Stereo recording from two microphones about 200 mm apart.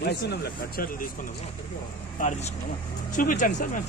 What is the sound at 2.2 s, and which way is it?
Speech, 35° left (ahead or behind).